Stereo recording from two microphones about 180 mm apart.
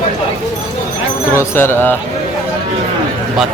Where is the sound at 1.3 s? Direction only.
15° left (ahead or behind).